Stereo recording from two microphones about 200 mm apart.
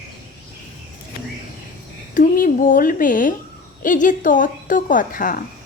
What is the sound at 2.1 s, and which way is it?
A woman's voice, 45° left (ahead or behind).